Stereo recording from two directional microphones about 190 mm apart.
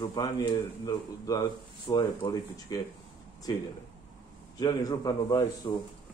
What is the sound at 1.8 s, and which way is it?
Speech, 25° left (ahead or behind).